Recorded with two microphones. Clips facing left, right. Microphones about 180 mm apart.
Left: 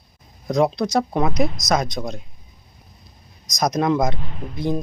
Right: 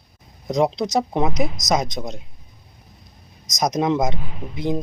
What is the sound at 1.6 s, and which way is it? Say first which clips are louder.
Speech: even; 20° right (ahead or behind).